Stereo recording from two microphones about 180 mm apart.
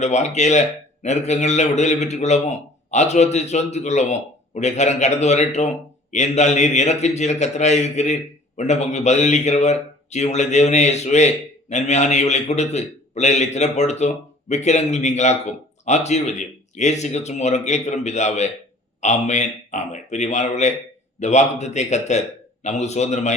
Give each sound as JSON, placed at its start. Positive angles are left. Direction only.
{"t": 0.0, "sound": "a man's voice", "side_deg": 40}